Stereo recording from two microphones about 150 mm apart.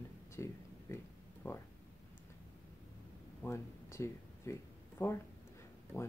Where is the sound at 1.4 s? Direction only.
15° left (ahead or behind).